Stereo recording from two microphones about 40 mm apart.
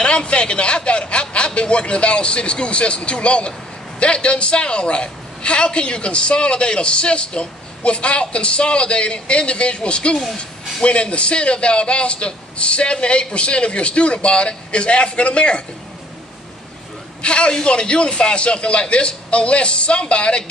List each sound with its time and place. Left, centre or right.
0.0 s a man's voice: left
17.2 s a woman's voice: left